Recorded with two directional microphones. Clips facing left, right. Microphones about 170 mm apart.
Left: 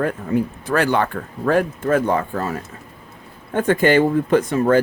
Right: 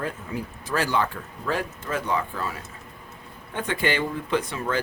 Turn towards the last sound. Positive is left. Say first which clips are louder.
# left 10 dB
turn(degrees=45)  # may be behind; listen again after turning